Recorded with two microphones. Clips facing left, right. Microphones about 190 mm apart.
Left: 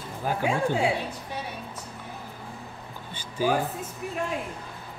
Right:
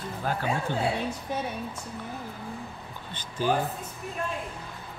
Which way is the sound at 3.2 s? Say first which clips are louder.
Left 1 dB; 10° left (ahead or behind).